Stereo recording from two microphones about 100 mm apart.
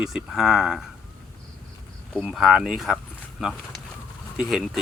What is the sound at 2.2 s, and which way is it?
Speech, 5° right (ahead or behind).